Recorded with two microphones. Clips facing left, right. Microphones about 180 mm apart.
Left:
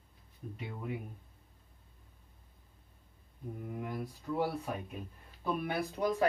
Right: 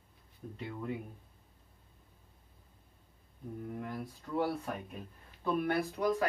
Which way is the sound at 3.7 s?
5° left (ahead or behind).